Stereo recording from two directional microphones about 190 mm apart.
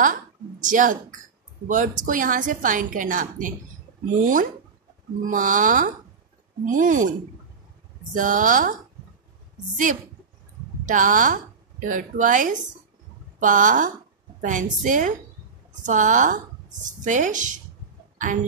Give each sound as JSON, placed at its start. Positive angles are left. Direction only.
{"t": 0.0, "sound": "a woman's voice", "side_deg": -45}
{"t": 10.9, "sound": "a woman's voice", "side_deg": -45}
{"t": 18.1, "sound": "a sound", "side_deg": -40}